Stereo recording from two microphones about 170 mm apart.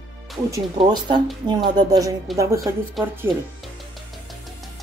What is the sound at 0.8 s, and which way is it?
A woman's voice, 30° right (ahead or behind).